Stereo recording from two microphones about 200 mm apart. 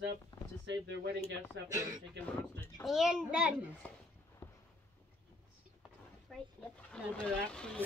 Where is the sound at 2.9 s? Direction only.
5° right (ahead or behind).